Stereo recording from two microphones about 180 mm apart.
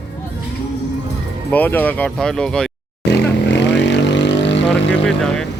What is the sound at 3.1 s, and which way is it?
Vehicle, 75° left (ahead or behind).